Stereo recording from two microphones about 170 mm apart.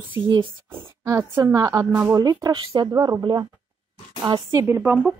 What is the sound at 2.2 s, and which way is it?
Speech, 20° right (ahead or behind).